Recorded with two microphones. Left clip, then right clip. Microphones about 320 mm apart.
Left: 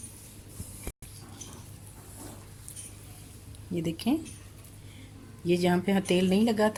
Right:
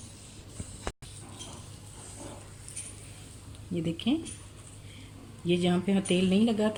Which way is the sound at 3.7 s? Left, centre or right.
Left.